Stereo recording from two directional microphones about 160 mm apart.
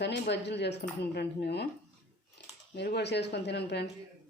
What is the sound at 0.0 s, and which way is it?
Speech, 90° left.